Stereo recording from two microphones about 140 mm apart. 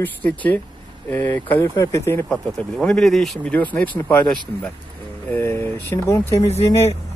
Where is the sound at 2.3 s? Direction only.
5° left (ahead or behind).